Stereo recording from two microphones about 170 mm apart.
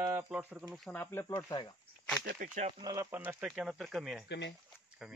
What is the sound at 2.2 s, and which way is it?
Speech, 60° right (ahead or behind).